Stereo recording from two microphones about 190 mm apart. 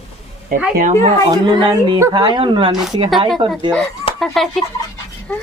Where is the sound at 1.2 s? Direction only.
25° right (ahead or behind).